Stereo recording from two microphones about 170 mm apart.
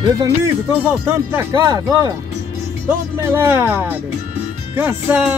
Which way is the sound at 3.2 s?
15° right (ahead or behind).